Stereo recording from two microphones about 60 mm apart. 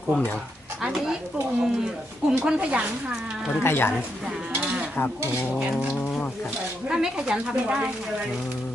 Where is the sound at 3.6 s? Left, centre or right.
Left.